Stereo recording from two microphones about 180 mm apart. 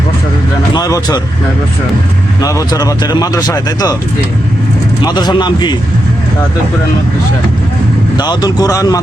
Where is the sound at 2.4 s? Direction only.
20° left (ahead or behind).